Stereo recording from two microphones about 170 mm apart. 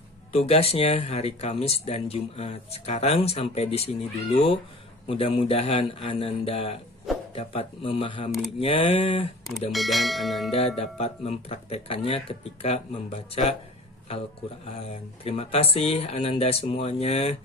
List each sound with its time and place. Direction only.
0.3 s speech: 35° left (ahead or behind)
9.7 s speech: centre (ahead or behind)
10.8 s speech: 35° left (ahead or behind)
14.8 s speech: 35° left (ahead or behind)